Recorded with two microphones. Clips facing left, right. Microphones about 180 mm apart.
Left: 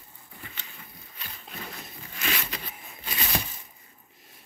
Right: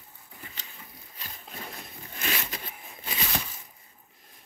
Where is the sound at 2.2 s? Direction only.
40° right (ahead or behind).